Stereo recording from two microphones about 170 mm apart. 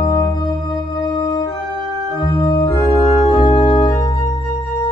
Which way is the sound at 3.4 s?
25° left (ahead or behind).